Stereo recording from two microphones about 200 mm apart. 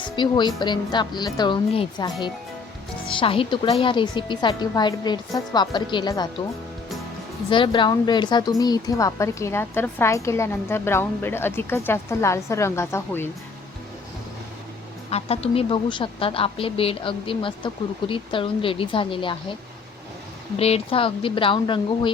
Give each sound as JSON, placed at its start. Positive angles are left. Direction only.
{"t": 0.2, "sound": "a woman's voice", "side_deg": 20}
{"t": 7.5, "sound": "a woman's voice", "side_deg": 25}
{"t": 15.1, "sound": "a woman's voice", "side_deg": 30}
{"t": 20.6, "sound": "a woman's voice", "side_deg": 30}